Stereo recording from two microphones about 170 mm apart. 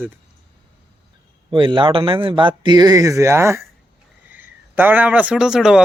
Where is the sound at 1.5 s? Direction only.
30° right (ahead or behind).